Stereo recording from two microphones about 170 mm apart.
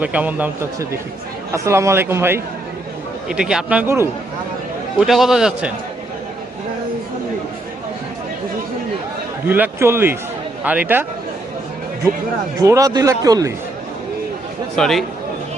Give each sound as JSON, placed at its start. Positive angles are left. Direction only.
{"t": 0.0, "sound": "speech", "side_deg": -10}
{"t": 4.9, "sound": "a man's voice", "side_deg": 0}
{"t": 9.5, "sound": "speech", "side_deg": -15}
{"t": 12.5, "sound": "speech", "side_deg": -20}
{"t": 14.8, "sound": "a man's voice", "side_deg": 0}